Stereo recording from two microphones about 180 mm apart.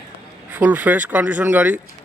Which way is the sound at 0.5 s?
10° right (ahead or behind).